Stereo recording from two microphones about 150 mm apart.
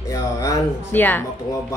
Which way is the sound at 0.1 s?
25° left (ahead or behind).